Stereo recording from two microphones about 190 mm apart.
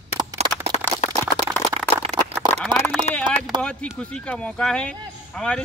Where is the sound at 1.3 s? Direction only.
25° left (ahead or behind).